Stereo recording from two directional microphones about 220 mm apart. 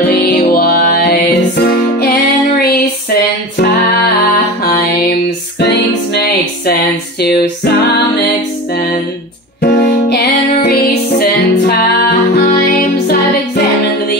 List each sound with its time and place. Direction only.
0.2 s music: 45° left (ahead or behind)
4.6 s mantra: 45° left (ahead or behind)
7.2 s music: 45° left (ahead or behind)
9.6 s music: 50° left (ahead or behind)